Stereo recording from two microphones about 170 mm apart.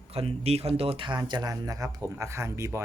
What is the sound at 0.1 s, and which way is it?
Speech, 35° right (ahead or behind).